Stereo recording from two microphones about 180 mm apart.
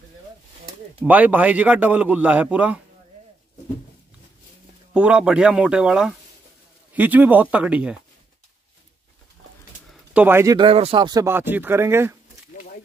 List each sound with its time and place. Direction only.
1.0 s a man's voice: 10° right (ahead or behind)
4.9 s a man's voice: 5° right (ahead or behind)
9.8 s a sound: 10° right (ahead or behind)
10.6 s a man's voice: 30° right (ahead or behind); by 12.2 s 15° right (ahead or behind)